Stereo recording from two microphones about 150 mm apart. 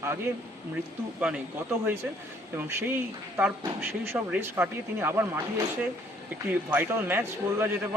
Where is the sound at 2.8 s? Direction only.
10° right (ahead or behind).